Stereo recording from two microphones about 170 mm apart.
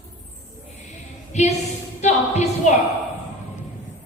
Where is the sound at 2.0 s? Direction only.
40° left (ahead or behind).